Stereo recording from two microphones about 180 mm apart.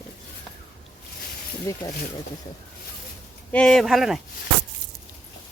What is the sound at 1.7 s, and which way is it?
Speech, 15° left (ahead or behind).